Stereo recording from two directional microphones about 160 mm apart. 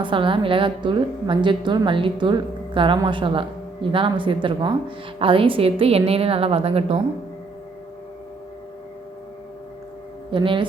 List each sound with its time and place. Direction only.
0.0 s a woman's voice: 30° right (ahead or behind)
10.3 s a woman's voice: 30° right (ahead or behind)